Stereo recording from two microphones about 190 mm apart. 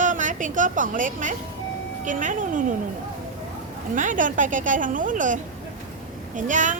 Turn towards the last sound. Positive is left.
turn(degrees=-40)  # may be behind; listen again after turning